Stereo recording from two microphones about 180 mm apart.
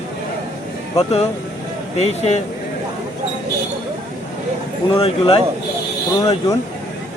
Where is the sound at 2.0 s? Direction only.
35° left (ahead or behind).